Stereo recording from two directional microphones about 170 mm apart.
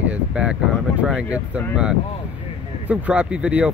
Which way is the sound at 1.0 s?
5° right (ahead or behind).